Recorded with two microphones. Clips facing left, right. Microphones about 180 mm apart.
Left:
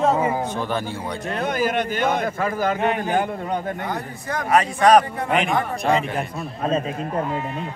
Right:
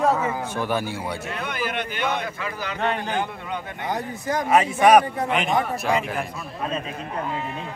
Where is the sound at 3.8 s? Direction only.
20° right (ahead or behind); by 5.9 s centre (ahead or behind).